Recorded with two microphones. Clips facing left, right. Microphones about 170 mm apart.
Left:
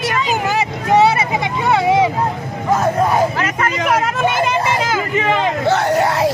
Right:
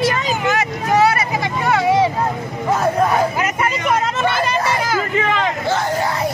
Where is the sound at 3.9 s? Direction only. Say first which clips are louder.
Left 2 dB; 5° left (ahead or behind).